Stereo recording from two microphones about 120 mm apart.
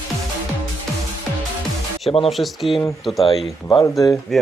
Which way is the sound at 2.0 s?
55° left (ahead or behind).